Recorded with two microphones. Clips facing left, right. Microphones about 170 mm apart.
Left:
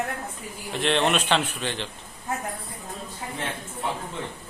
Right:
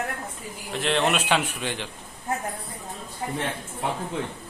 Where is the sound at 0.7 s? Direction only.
Centre (ahead or behind).